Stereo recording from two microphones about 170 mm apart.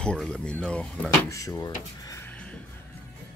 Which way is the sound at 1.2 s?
20° left (ahead or behind).